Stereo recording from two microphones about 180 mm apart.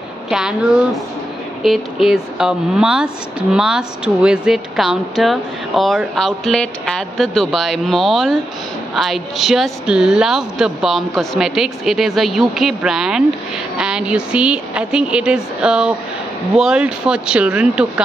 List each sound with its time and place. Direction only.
0.3 s a woman's voice: 5° right (ahead or behind)
1.6 s speech: centre (ahead or behind)